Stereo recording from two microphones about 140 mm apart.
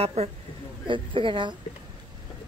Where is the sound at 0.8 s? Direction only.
35° right (ahead or behind).